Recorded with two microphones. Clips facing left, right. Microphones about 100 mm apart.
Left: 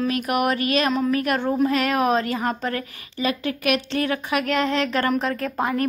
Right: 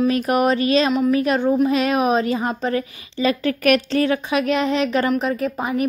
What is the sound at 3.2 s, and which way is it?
Speech, 35° right (ahead or behind).